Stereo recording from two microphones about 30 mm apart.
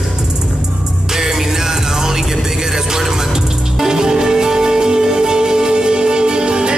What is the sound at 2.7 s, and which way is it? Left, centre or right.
Music, centre.